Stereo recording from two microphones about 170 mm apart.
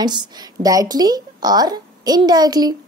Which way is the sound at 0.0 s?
25° right (ahead or behind).